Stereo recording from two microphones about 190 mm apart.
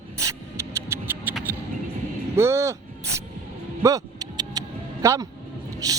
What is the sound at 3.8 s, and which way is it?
Livestock, 20° right (ahead or behind).